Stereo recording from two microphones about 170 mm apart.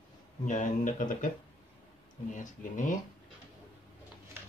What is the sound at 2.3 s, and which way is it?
Speech, 50° left (ahead or behind).